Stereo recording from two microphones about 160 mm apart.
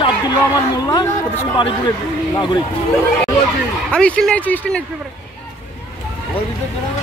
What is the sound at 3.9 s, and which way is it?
Speech, 5° left (ahead or behind).